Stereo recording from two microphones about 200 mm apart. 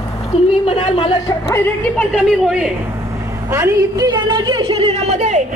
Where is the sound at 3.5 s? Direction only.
15° right (ahead or behind).